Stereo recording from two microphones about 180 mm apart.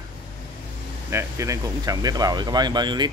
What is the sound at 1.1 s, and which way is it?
Speech, 15° right (ahead or behind).